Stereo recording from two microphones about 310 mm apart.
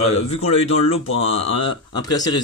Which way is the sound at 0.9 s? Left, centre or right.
Left.